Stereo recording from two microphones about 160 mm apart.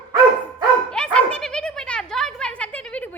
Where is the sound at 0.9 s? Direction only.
5° left (ahead or behind).